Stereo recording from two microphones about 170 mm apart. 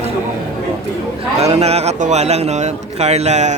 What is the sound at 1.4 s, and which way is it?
A man's voice, 40° right (ahead or behind).